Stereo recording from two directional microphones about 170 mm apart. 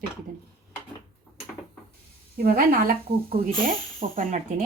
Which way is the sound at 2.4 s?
60° right (ahead or behind).